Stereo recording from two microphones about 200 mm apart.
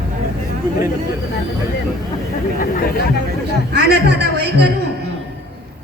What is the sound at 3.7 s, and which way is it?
Speech, 55° right (ahead or behind).